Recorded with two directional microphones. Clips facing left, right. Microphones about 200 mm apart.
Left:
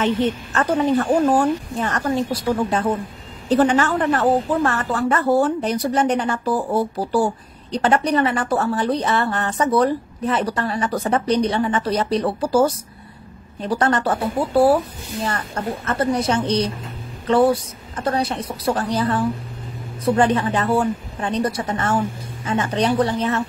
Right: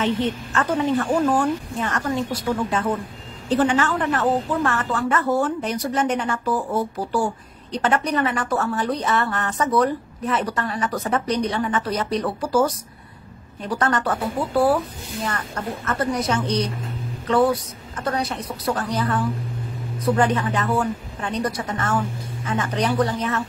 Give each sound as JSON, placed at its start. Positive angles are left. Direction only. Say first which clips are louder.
{"t": 0.0, "sound": "a woman's voice", "louder": "left 3 dB", "side_deg": 40}
{"t": 15.2, "sound": "a woman's voice", "louder": "left 3 dB", "side_deg": 30}